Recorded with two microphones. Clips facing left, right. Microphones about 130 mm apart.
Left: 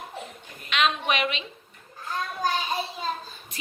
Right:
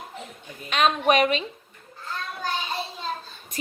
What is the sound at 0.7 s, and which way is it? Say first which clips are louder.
Speech: right 5 dB; 40° right (ahead or behind).